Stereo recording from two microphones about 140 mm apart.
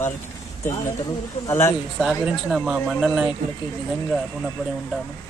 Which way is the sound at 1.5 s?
15° left (ahead or behind).